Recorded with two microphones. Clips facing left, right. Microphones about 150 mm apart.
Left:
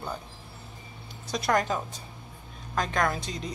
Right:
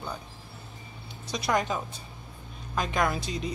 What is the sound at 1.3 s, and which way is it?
A woman's voice, centre (ahead or behind).